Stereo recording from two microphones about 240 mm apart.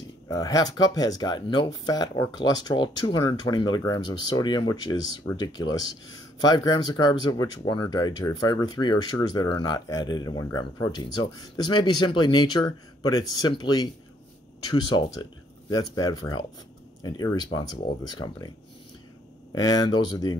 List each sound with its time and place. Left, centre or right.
0.3 s speech: centre
15.7 s speech: centre
19.5 s speech: centre